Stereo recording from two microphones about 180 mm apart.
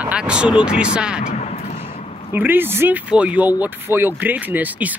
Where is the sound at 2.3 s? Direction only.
10° right (ahead or behind).